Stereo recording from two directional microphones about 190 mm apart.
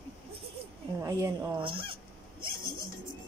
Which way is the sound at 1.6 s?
25° right (ahead or behind).